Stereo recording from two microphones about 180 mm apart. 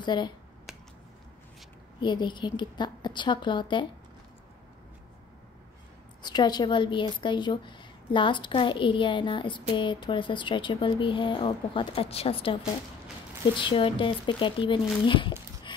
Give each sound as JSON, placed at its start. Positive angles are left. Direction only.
{"t": 0.0, "sound": "speech", "side_deg": 25}
{"t": 2.0, "sound": "a woman's voice", "side_deg": 25}
{"t": 6.2, "sound": "a woman's voice", "side_deg": 25}
{"t": 13.6, "sound": "a woman's voice", "side_deg": 30}